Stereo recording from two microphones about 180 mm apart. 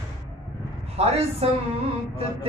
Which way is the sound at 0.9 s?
35° right (ahead or behind).